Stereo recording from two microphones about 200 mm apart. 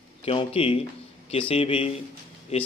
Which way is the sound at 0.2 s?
30° left (ahead or behind).